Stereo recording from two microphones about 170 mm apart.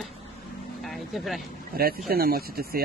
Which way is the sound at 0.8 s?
Centre (ahead or behind).